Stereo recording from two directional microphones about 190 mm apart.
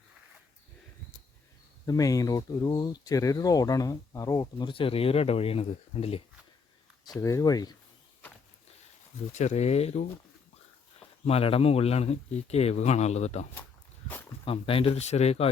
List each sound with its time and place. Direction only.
1.9 s speech: 20° left (ahead or behind)
7.0 s speech: 20° left (ahead or behind)
9.3 s speech: 35° left (ahead or behind)
11.3 s speech: 30° left (ahead or behind)